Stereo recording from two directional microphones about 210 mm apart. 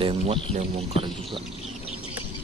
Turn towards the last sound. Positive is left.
turn(degrees=-25)  # may be behind; listen again after turning